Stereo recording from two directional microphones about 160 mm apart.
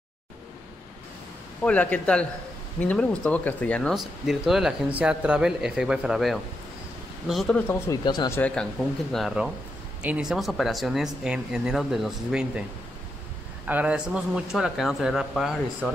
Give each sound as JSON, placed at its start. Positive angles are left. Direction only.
{"t": 1.6, "sound": "speech", "side_deg": 10}
{"t": 7.9, "sound": "speech", "side_deg": 25}
{"t": 8.3, "sound": "speech", "side_deg": 10}
{"t": 13.7, "sound": "speech", "side_deg": -10}